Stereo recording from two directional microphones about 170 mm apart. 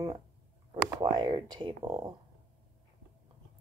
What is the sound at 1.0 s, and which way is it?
Speech, 25° right (ahead or behind).